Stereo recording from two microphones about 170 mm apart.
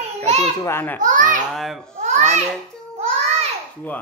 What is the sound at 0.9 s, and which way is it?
Speech, 50° right (ahead or behind).